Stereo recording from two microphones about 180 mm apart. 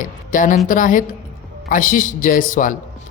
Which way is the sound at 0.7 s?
50° left (ahead or behind).